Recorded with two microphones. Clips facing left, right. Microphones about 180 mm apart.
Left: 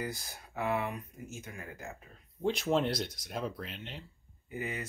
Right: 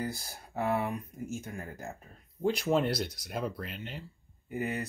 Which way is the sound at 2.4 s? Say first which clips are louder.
Right 2 dB; 5° right (ahead or behind).